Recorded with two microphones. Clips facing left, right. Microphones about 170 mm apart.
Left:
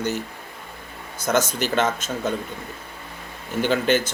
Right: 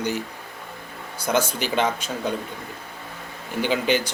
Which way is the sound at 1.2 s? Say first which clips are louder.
Left 1 dB; 10° right (ahead or behind).